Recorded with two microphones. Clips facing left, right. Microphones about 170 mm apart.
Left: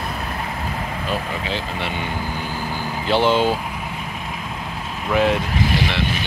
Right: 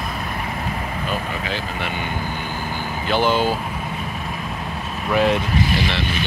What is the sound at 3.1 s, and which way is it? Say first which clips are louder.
Speech: left 2 dB; 25° left (ahead or behind).